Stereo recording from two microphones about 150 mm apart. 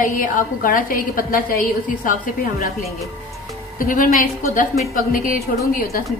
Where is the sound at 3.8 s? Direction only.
65° left (ahead or behind).